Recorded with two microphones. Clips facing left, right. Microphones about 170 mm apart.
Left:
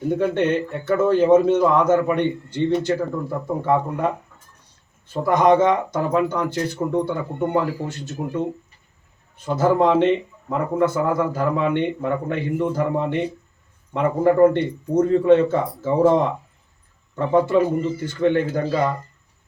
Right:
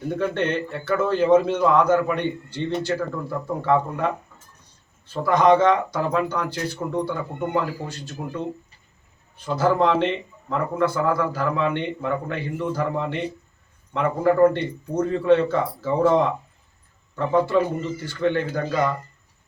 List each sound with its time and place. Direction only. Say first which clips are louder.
0.1 s a man's voice: left 4 dB; 15° left (ahead or behind)
5.1 s a man's voice: left 1 dB; 15° left (ahead or behind)
17.2 s a man's voice: left 3 dB; 20° left (ahead or behind)